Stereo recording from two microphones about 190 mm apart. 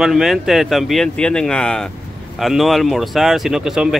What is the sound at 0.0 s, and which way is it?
Speech, centre (ahead or behind).